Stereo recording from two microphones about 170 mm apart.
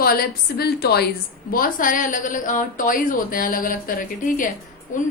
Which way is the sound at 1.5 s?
55° left (ahead or behind).